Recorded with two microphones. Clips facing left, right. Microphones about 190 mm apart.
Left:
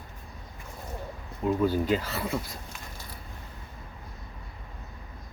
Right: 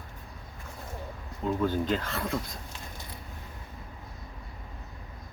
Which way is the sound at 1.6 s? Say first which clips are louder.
Left 2 dB; 10° left (ahead or behind).